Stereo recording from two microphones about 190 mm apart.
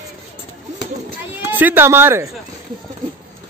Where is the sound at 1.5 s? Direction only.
10° right (ahead or behind).